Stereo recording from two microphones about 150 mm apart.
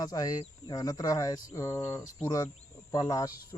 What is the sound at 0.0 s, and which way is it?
Speech, 25° left (ahead or behind).